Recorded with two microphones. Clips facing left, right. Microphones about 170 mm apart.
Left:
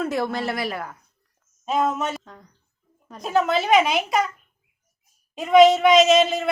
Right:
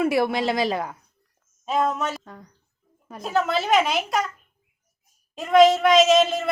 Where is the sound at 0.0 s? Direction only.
10° right (ahead or behind).